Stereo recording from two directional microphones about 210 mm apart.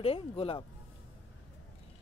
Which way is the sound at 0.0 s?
25° left (ahead or behind).